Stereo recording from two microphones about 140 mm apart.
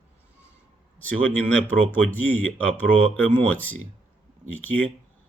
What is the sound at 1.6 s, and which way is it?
Speech, 15° left (ahead or behind).